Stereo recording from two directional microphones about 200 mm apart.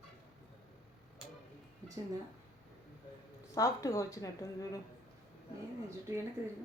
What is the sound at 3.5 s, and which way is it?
A woman's voice, 15° left (ahead or behind).